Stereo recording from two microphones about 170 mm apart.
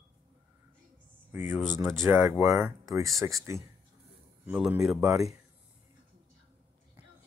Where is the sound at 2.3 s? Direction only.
15° right (ahead or behind).